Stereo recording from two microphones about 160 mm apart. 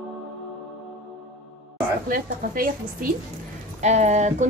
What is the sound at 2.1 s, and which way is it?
Speech, 60° right (ahead or behind).